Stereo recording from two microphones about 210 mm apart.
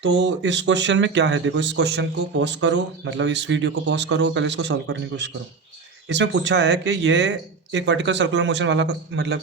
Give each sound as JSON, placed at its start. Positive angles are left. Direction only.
{"t": 0.2, "sound": "speech", "side_deg": -60}